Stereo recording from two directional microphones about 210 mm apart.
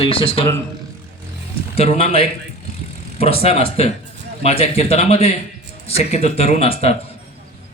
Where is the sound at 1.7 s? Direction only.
30° left (ahead or behind).